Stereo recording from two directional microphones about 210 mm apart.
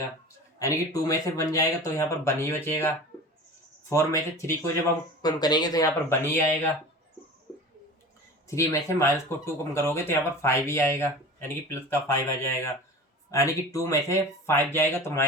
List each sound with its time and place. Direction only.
0.6 s speech: 15° left (ahead or behind)
8.4 s speech: 15° left (ahead or behind)